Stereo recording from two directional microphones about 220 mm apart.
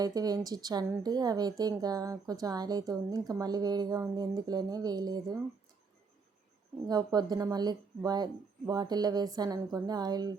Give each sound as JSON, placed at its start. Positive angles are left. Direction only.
{"t": 0.0, "sound": "a woman's voice", "side_deg": -15}
{"t": 6.8, "sound": "a woman's voice", "side_deg": -20}